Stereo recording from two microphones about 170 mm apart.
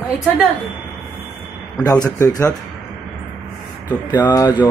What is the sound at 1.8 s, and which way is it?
Speech, 20° left (ahead or behind).